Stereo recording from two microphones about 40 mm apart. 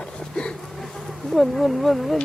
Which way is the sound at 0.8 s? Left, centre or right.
Centre.